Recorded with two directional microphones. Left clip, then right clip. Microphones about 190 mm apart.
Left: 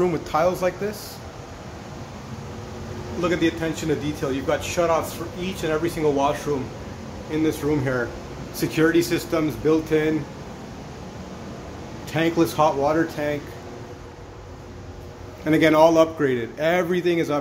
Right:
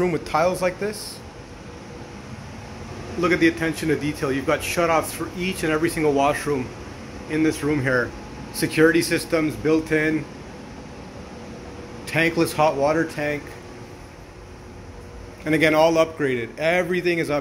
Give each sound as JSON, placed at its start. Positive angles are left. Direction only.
{"t": 0.0, "sound": "a man's voice", "side_deg": 5}
{"t": 3.2, "sound": "a man's voice", "side_deg": -5}
{"t": 12.1, "sound": "a man's voice", "side_deg": 5}
{"t": 15.4, "sound": "a man's voice", "side_deg": 15}